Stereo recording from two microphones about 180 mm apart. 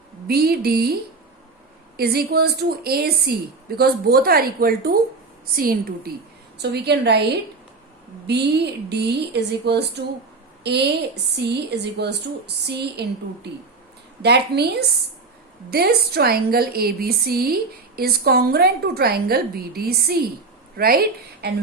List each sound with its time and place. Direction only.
0.3 s a woman's voice: 60° right (ahead or behind)
2.0 s a woman's voice: 60° right (ahead or behind)
6.6 s a woman's voice: 70° right (ahead or behind)
8.3 s a woman's voice: 65° right (ahead or behind)